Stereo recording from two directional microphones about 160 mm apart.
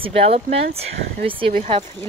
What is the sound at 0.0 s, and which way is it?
Speech, 40° right (ahead or behind).